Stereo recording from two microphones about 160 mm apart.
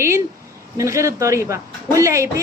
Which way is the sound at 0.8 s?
20° right (ahead or behind).